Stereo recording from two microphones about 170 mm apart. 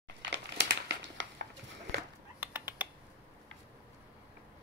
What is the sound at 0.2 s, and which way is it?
Crumpling, 90° right.